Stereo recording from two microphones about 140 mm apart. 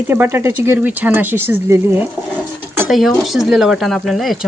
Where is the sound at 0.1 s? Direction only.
15° right (ahead or behind).